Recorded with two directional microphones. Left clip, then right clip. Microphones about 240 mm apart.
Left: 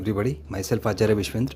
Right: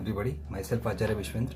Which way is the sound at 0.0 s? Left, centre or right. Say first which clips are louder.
Left 8 dB; left.